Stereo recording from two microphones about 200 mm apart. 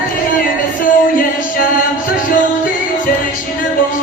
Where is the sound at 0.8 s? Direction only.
45° left (ahead or behind).